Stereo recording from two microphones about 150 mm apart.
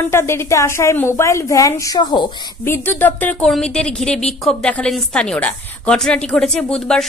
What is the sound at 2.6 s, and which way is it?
A woman's voice, 15° left (ahead or behind).